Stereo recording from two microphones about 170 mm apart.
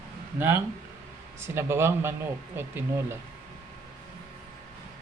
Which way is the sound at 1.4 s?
15° right (ahead or behind).